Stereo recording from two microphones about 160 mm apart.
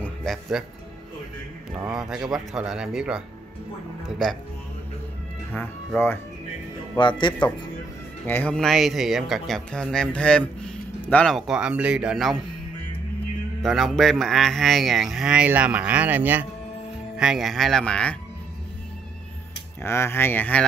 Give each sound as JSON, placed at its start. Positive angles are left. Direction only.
{"t": 0.0, "sound": "speech", "side_deg": 0}
{"t": 1.9, "sound": "speech", "side_deg": 0}
{"t": 7.0, "sound": "speech", "side_deg": 30}
{"t": 8.3, "sound": "speech", "side_deg": 10}
{"t": 13.6, "sound": "speech", "side_deg": 0}
{"t": 19.8, "sound": "speech", "side_deg": 15}